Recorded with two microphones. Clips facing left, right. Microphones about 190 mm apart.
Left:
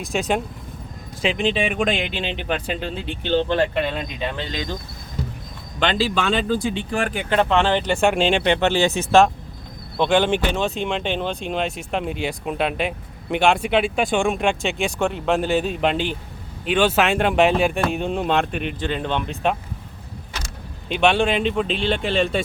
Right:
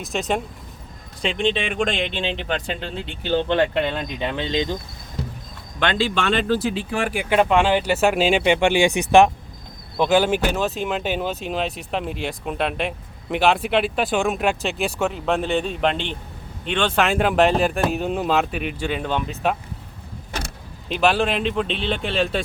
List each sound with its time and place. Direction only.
0.0 s speech: centre (ahead or behind)
4.4 s speech: 20° right (ahead or behind)
5.8 s speech: centre (ahead or behind)
20.9 s speech: centre (ahead or behind)